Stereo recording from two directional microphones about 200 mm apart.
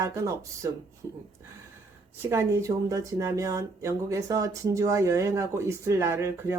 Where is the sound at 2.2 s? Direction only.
10° right (ahead or behind).